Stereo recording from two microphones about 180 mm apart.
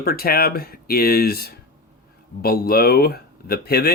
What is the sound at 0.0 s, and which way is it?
Speech, 55° left (ahead or behind).